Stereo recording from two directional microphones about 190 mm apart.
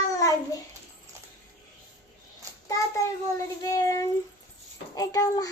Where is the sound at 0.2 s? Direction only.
20° left (ahead or behind).